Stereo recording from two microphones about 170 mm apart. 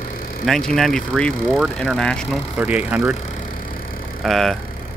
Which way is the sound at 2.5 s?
10° right (ahead or behind).